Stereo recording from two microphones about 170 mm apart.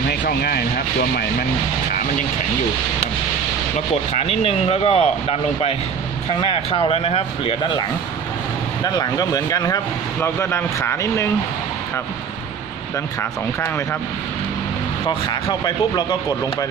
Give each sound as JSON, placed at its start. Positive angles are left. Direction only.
{"t": 0.2, "sound": "speech", "side_deg": 65}
{"t": 3.9, "sound": "speech", "side_deg": 40}
{"t": 6.5, "sound": "speech", "side_deg": 35}
{"t": 8.8, "sound": "speech", "side_deg": 20}
{"t": 13.2, "sound": "speech", "side_deg": 15}
{"t": 15.0, "sound": "speech", "side_deg": 25}